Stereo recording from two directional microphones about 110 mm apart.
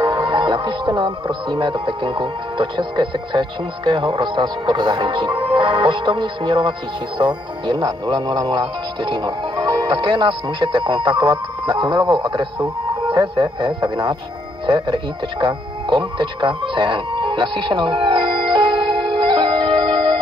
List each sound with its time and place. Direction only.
0.0 s music: 45° right (ahead or behind)
1.5 s speech: 45° right (ahead or behind)
15.4 s music: 50° right (ahead or behind)